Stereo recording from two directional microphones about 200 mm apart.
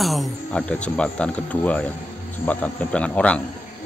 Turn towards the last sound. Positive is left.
turn(degrees=5)  # may be behind; listen again after turning